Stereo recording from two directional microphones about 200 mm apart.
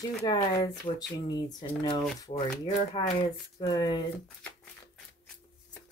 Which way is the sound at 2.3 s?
35° left (ahead or behind).